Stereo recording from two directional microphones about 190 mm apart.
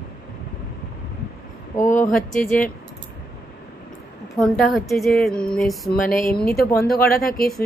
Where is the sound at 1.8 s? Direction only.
45° left (ahead or behind).